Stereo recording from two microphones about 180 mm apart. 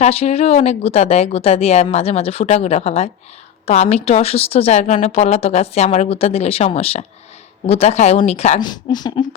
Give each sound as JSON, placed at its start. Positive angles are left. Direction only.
{"t": 0.0, "sound": "speech", "side_deg": 35}
{"t": 8.6, "sound": "speech", "side_deg": 25}